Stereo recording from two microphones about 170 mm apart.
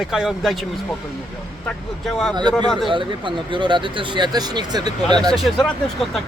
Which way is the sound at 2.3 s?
25° right (ahead or behind).